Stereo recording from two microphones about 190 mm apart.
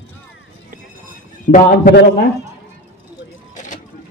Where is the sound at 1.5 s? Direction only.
55° left (ahead or behind).